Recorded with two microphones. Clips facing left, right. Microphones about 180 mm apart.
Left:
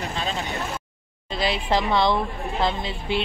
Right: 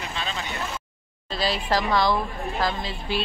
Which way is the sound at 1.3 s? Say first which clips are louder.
Left 1 dB; 20° left (ahead or behind).